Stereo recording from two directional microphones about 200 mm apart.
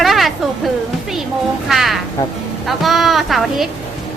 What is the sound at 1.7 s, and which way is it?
Speech, centre (ahead or behind).